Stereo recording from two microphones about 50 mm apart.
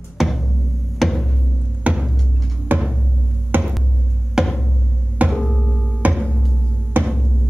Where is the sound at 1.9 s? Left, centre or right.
Right.